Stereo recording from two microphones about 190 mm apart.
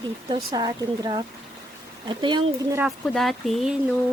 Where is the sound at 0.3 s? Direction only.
20° right (ahead or behind).